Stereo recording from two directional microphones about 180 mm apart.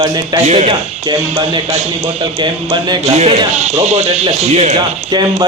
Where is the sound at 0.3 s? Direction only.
35° right (ahead or behind).